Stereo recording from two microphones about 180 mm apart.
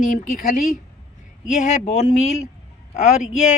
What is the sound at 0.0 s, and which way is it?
Speech, 45° left (ahead or behind).